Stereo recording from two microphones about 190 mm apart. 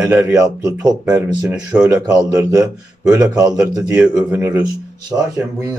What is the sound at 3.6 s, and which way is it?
A man's voice, 5° right (ahead or behind).